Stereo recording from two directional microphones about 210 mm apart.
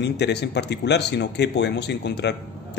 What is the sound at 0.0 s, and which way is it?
A man's voice, 55° left (ahead or behind).